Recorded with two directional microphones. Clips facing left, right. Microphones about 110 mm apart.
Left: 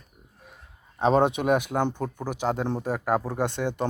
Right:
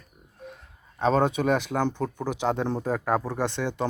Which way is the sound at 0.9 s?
15° left (ahead or behind).